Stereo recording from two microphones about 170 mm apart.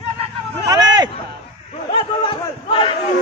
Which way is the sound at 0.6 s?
25° right (ahead or behind).